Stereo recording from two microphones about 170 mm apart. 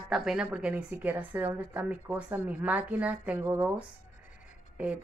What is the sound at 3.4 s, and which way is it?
Speech, 20° right (ahead or behind).